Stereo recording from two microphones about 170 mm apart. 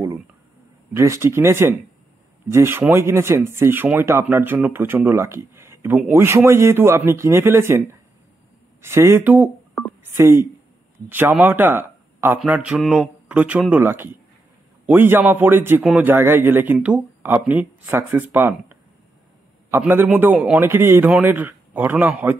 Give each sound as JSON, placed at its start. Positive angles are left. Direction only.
{"t": 0.9, "sound": "speech", "side_deg": -15}
{"t": 8.8, "sound": "speech", "side_deg": -15}
{"t": 19.7, "sound": "speech", "side_deg": -15}